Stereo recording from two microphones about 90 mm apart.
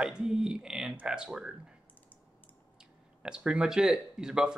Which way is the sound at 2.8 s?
10° right (ahead or behind).